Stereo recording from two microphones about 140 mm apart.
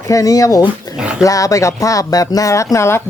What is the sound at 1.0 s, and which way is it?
Dog, 5° right (ahead or behind).